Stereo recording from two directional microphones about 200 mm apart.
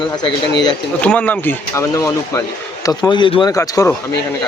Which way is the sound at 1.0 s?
5° left (ahead or behind).